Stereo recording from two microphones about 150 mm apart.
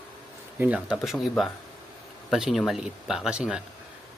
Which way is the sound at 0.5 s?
10° right (ahead or behind).